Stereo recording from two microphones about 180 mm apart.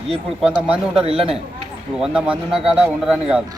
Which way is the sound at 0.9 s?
30° right (ahead or behind).